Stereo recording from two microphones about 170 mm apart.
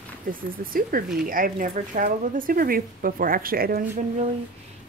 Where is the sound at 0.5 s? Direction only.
55° right (ahead or behind).